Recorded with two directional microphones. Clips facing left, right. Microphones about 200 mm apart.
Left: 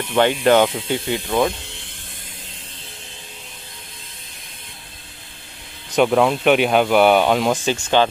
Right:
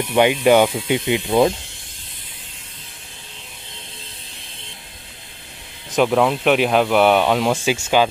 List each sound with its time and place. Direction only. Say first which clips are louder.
0.0 s speech: right 1 dB; 15° right (ahead or behind)
5.9 s speech: left 1 dB; centre (ahead or behind)